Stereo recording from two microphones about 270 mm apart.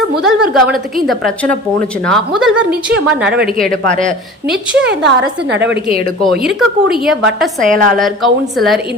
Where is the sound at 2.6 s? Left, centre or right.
Right.